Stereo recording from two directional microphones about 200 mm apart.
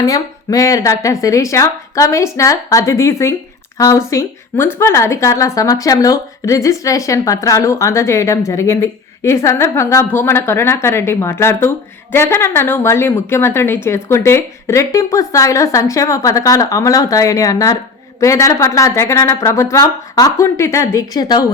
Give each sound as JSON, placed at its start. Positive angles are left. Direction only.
{"t": 0.0, "sound": "a woman's voice", "side_deg": 15}